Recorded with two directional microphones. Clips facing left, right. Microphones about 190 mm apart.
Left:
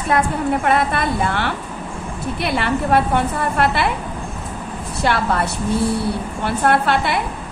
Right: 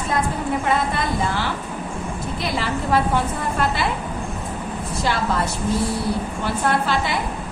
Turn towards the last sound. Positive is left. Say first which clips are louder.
# left 4 dB
turn(degrees=65)  # may be behind; listen again after turning